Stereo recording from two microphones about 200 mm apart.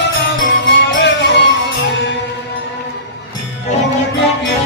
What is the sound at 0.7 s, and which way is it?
Music, 60° left (ahead or behind).